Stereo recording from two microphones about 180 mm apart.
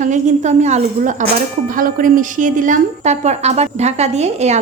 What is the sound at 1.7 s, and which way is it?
A woman's voice, 50° right (ahead or behind).